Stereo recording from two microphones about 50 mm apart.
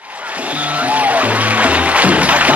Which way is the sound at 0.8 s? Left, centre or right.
Right.